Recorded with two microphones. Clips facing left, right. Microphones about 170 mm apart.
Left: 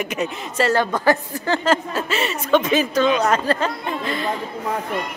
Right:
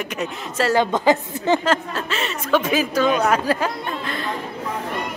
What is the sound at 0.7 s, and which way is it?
Speech, 20° right (ahead or behind).